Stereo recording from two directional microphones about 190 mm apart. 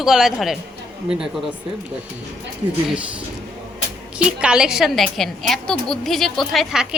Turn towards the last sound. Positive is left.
turn(degrees=0)  # may be behind; listen again after turning